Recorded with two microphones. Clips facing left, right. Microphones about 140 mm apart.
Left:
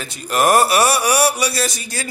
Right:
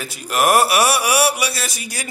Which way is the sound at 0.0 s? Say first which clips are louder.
Left 1 dB; 5° right (ahead or behind).